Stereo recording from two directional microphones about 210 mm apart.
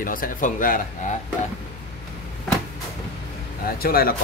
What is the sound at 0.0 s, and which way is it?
Speech, 40° left (ahead or behind).